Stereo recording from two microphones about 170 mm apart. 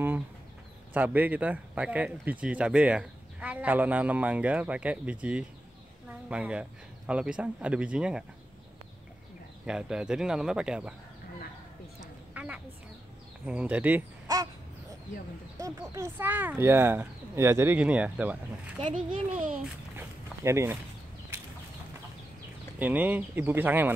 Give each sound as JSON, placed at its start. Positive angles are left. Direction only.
{"t": 0.9, "sound": "speech", "side_deg": -10}
{"t": 9.7, "sound": "speech", "side_deg": -5}
{"t": 12.0, "sound": "a sound", "side_deg": -5}
{"t": 13.5, "sound": "speech", "side_deg": -5}
{"t": 14.2, "sound": "crow", "side_deg": -20}
{"t": 15.6, "sound": "speech", "side_deg": -20}
{"t": 18.8, "sound": "a child's voice", "side_deg": -30}
{"t": 19.6, "sound": "dog", "side_deg": -15}
{"t": 22.8, "sound": "speech", "side_deg": -10}